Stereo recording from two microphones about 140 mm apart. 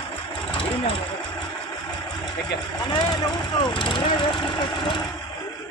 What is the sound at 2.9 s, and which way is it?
Speech, 30° left (ahead or behind).